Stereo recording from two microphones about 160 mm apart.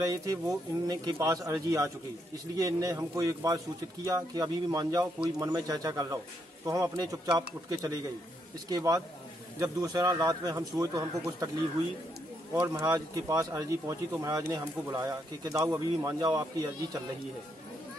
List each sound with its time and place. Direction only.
0.0 s speech: 20° right (ahead or behind)
12.5 s speech: 20° right (ahead or behind)